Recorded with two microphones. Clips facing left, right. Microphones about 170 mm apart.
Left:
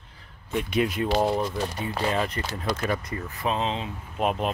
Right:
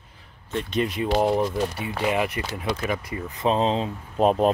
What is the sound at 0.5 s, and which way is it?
Speech, 5° left (ahead or behind).